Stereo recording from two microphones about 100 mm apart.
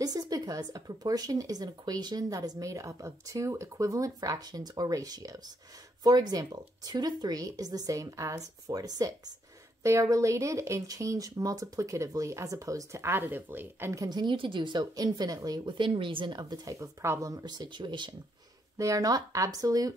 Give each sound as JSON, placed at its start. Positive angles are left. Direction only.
{"t": 0.0, "sound": "speech", "side_deg": -40}
{"t": 14.0, "sound": "a woman's voice", "side_deg": -45}
{"t": 16.7, "sound": "speech", "side_deg": -30}
{"t": 18.8, "sound": "speech", "side_deg": -35}